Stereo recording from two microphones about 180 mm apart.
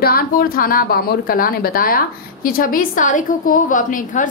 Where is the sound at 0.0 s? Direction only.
55° left (ahead or behind).